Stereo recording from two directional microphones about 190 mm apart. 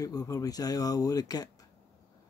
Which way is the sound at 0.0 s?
20° left (ahead or behind).